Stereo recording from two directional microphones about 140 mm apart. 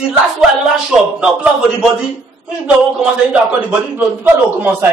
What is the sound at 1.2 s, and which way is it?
Speech, 5° right (ahead or behind).